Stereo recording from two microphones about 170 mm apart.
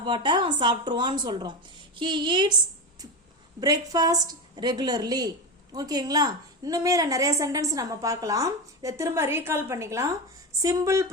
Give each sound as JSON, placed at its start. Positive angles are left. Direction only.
{"t": 0.0, "sound": "a woman's voice", "side_deg": -25}
{"t": 3.6, "sound": "a woman's voice", "side_deg": -20}